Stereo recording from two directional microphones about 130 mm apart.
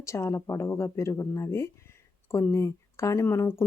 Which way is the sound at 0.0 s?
20° left (ahead or behind).